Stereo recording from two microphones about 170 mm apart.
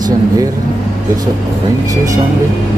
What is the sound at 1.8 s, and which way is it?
Speech, 20° right (ahead or behind).